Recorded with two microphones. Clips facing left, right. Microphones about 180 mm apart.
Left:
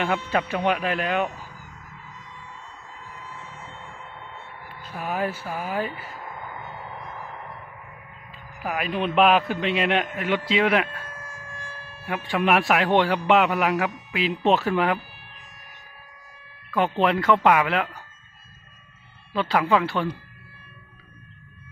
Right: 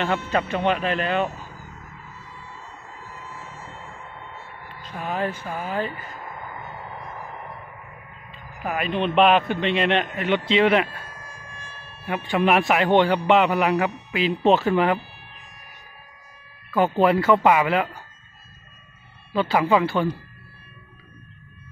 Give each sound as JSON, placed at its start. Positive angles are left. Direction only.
{"t": 0.0, "sound": "speech", "side_deg": 10}
{"t": 4.6, "sound": "a sound", "side_deg": 10}
{"t": 8.6, "sound": "speech", "side_deg": 5}
{"t": 11.1, "sound": "wind instrument", "side_deg": 50}
{"t": 12.3, "sound": "speech", "side_deg": 0}
{"t": 16.7, "sound": "speech", "side_deg": -5}
{"t": 19.3, "sound": "speech", "side_deg": 0}